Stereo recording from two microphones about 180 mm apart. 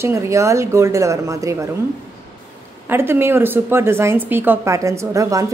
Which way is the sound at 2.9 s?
15° right (ahead or behind).